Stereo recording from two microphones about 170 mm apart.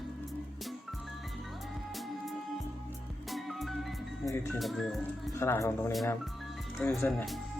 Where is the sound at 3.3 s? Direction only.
Centre (ahead or behind).